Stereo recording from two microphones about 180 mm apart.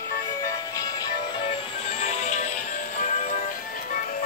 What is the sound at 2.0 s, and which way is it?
Music, 35° left (ahead or behind).